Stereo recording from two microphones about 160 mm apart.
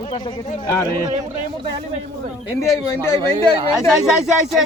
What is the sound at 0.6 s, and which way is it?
Speech, 20° left (ahead or behind).